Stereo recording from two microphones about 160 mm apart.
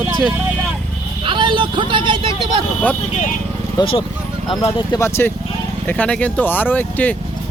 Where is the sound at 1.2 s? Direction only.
30° right (ahead or behind).